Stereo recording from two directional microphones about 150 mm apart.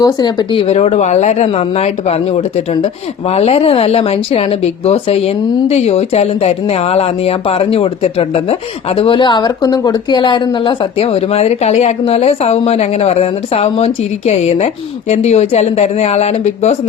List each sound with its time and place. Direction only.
0.0 s a woman's voice: 25° left (ahead or behind); by 16.7 s 45° left (ahead or behind)